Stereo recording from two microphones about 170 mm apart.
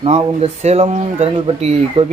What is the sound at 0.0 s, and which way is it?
Speech, 40° right (ahead or behind).